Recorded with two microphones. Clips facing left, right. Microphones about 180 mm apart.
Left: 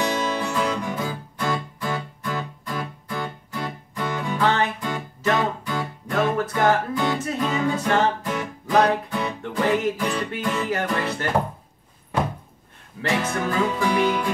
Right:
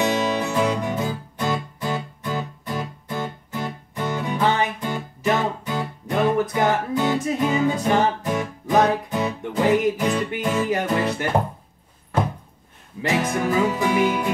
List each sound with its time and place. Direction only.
0.0 s music: 20° right (ahead or behind)
13.0 s music: 20° right (ahead or behind)